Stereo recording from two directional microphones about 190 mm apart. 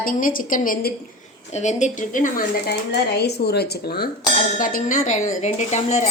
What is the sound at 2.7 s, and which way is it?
Speech, 60° left (ahead or behind).